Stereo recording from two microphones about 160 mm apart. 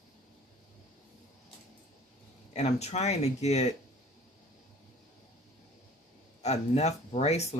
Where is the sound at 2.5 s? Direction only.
45° left (ahead or behind).